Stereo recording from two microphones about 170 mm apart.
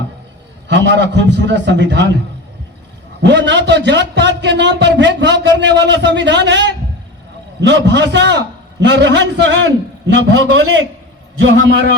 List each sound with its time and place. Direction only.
0.7 s speech: 90° right
3.2 s speech: 90° right